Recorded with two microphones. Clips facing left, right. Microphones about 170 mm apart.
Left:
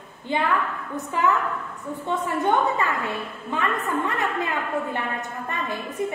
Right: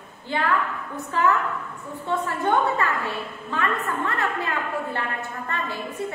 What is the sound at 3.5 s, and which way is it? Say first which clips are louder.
Speech: left 1 dB; 15° left (ahead or behind).